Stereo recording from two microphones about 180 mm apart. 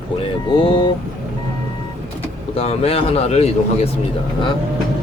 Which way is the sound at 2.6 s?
35° left (ahead or behind).